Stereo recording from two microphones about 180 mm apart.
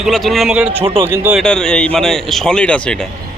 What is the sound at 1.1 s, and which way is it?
Speech, 10° right (ahead or behind).